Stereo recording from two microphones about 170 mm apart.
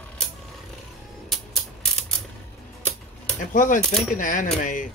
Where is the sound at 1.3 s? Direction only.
Centre (ahead or behind).